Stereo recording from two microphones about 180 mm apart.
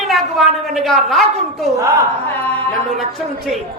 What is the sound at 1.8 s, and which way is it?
Speech, 15° right (ahead or behind).